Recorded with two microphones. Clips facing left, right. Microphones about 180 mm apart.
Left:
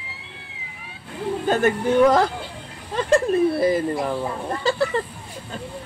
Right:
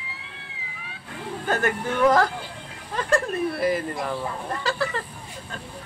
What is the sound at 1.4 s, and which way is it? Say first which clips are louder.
Speech: left 5 dB; 20° left (ahead or behind).